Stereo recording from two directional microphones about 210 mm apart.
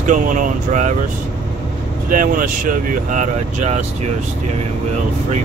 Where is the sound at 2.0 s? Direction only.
40° right (ahead or behind).